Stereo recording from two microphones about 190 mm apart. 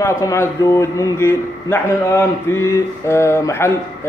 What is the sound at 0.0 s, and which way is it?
A man's voice, 15° left (ahead or behind).